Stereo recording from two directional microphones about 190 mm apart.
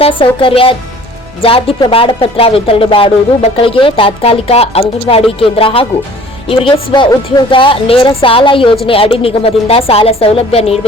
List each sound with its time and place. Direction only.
0.0 s a woman's voice: 25° left (ahead or behind)